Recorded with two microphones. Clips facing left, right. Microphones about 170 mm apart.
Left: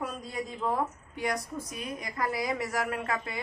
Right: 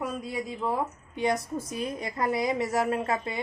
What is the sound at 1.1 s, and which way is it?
A woman's voice, 25° right (ahead or behind).